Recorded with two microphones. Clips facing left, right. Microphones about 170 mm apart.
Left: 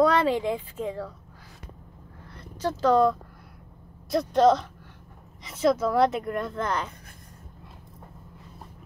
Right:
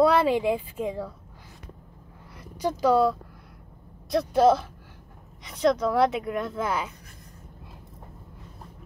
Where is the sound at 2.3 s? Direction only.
10° right (ahead or behind).